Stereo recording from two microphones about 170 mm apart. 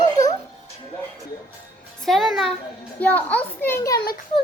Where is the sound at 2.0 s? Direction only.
Centre (ahead or behind); by 4.0 s 15° left (ahead or behind).